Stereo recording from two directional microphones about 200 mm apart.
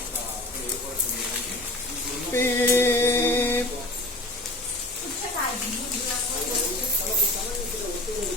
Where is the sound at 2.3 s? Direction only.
10° left (ahead or behind).